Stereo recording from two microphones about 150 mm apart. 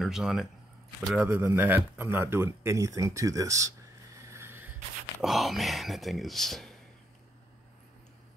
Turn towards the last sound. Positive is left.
turn(degrees=0)  # may be behind; listen again after turning